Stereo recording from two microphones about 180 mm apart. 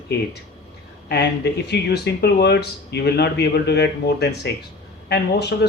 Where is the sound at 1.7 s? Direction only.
65° left (ahead or behind).